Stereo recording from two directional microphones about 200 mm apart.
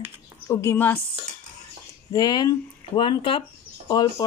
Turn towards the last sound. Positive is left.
turn(degrees=20)  # may be behind; listen again after turning